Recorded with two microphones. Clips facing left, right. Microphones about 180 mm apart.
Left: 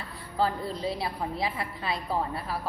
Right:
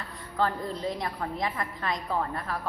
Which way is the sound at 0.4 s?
10° left (ahead or behind).